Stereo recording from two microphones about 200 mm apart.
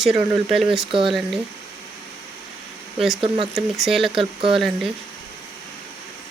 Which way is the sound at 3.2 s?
25° right (ahead or behind).